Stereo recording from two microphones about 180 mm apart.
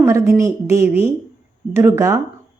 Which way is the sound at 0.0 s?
15° right (ahead or behind).